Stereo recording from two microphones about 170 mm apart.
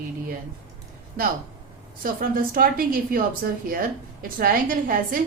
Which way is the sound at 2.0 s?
55° right (ahead or behind).